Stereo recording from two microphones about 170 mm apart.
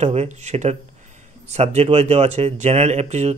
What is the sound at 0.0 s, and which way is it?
Speech, 40° right (ahead or behind).